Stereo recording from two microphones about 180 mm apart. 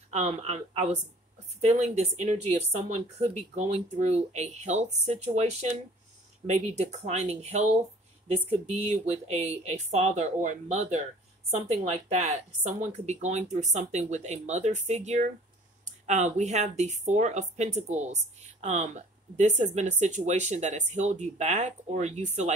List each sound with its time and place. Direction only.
0.1 s speech: 40° right (ahead or behind)